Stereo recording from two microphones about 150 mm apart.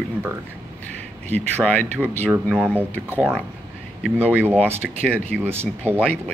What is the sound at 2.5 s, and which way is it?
Speech, 10° right (ahead or behind).